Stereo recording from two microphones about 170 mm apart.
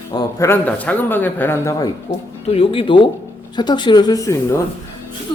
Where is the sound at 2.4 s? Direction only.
35° left (ahead or behind); by 4.6 s 20° left (ahead or behind).